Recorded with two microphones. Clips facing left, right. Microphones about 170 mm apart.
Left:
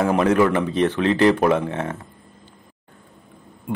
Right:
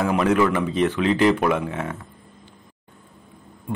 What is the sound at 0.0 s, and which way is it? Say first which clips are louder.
A man's voice: left 2 dB; 35° left (ahead or behind).